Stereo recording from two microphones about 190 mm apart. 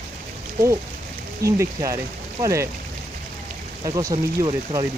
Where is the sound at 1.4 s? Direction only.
15° right (ahead or behind).